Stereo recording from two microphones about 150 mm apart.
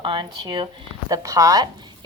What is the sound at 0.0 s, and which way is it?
A woman's voice, 30° right (ahead or behind).